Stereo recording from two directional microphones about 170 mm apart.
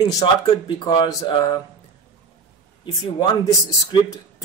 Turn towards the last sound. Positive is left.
turn(degrees=30)  # may be behind; listen again after turning